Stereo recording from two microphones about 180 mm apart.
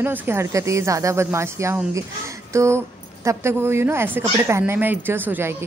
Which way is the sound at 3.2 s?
15° right (ahead or behind).